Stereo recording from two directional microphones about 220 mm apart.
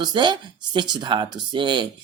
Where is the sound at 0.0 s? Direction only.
20° right (ahead or behind).